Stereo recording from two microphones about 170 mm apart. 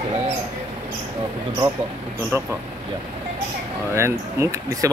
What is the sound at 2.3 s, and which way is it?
Speech, 15° right (ahead or behind).